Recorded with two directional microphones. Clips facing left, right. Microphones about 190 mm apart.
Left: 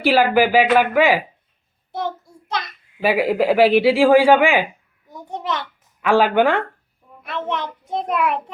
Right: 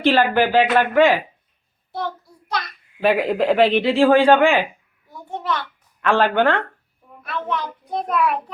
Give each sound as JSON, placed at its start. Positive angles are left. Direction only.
{"t": 0.0, "sound": "speech", "side_deg": 10}
{"t": 3.0, "sound": "speech", "side_deg": 10}
{"t": 5.0, "sound": "a sound", "side_deg": 20}
{"t": 6.0, "sound": "speech", "side_deg": 10}
{"t": 7.2, "sound": "a child's voice", "side_deg": 20}